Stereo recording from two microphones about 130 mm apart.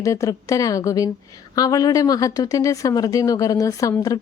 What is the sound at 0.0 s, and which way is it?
Speech, 25° left (ahead or behind).